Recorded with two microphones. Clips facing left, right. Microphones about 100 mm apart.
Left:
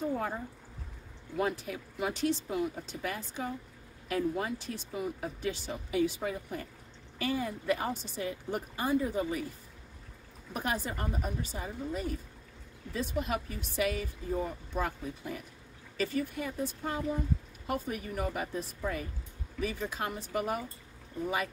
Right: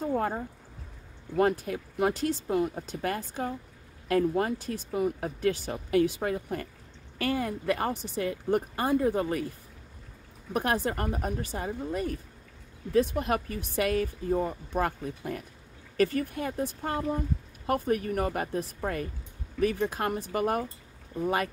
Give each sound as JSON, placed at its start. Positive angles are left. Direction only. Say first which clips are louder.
{"t": 0.1, "sound": "a sound", "louder": "right 5 dB", "side_deg": -55}
{"t": 1.3, "sound": "speech", "louder": "right 7 dB", "side_deg": -55}
{"t": 10.5, "sound": "speech", "louder": "right 6 dB", "side_deg": -60}